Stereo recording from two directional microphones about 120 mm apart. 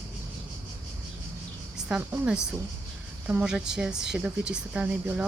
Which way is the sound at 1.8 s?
10° right (ahead or behind).